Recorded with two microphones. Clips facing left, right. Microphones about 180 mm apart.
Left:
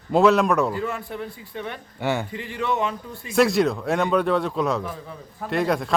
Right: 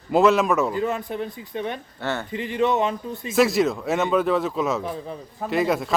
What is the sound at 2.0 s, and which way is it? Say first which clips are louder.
Speech: left 3 dB; 10° left (ahead or behind).